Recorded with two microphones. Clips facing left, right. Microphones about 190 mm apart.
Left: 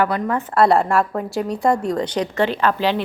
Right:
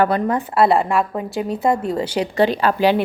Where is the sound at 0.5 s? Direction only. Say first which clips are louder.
Left 1 dB; centre (ahead or behind).